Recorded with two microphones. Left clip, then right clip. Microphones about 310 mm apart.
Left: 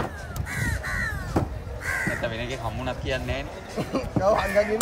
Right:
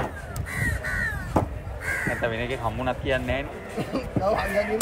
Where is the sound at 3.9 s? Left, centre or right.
Centre.